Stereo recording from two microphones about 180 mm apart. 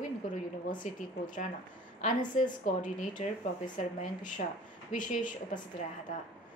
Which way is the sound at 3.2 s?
40° left (ahead or behind).